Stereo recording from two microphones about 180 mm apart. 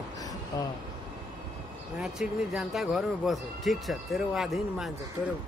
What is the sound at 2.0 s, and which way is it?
Speech, 5° right (ahead or behind).